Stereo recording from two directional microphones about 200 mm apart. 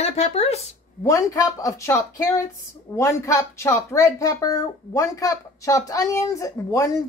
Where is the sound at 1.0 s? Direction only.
15° left (ahead or behind).